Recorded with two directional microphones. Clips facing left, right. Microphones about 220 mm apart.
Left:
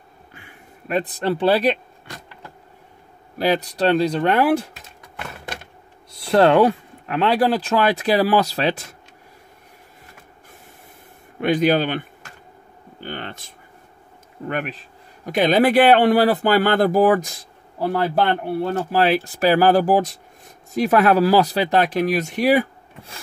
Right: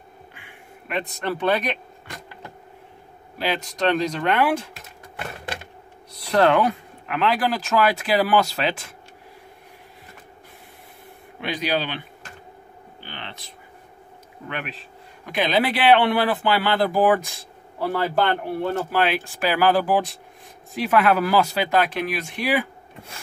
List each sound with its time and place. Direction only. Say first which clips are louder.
0.3 s a sound: even; 40° left (ahead or behind)
3.3 s speech: left 6 dB; 40° left (ahead or behind)
6.3 s speech: left 4 dB; 30° left (ahead or behind)
11.4 s a man's voice: left 8 dB; 50° left (ahead or behind)
13.0 s a sound: left 7 dB; 50° left (ahead or behind)
14.5 s a man's voice: left 6 dB; 45° left (ahead or behind)